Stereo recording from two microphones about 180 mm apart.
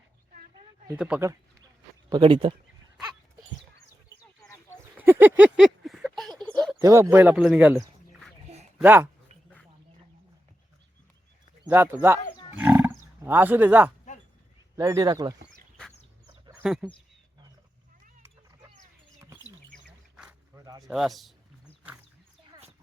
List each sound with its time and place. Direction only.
0.9 s speech: 5° right (ahead or behind)
2.0 s speech: 25° right (ahead or behind)
4.7 s a sound: 10° right (ahead or behind)
6.7 s a man's voice: 15° right (ahead or behind)
8.8 s speech: 10° right (ahead or behind)
11.7 s speech: 10° right (ahead or behind)
12.5 s wild animals: 10° right (ahead or behind)
14.8 s speech: 20° right (ahead or behind)
16.6 s a man's voice: 5° right (ahead or behind)
19.7 s bird: 5° right (ahead or behind)
20.8 s a man's voice: centre (ahead or behind)